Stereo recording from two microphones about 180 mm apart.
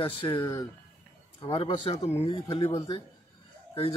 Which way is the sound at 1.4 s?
30° left (ahead or behind).